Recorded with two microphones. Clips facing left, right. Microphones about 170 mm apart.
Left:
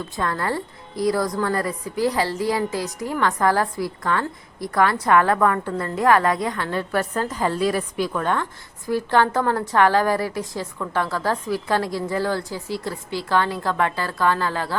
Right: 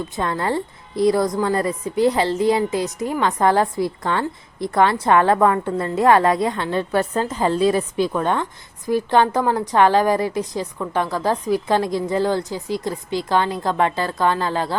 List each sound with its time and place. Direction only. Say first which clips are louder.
0.2 s a woman's voice: right 2 dB; 20° right (ahead or behind)